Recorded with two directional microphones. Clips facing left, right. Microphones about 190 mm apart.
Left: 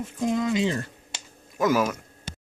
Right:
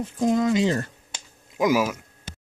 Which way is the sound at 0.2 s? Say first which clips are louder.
Right 3 dB; 40° right (ahead or behind).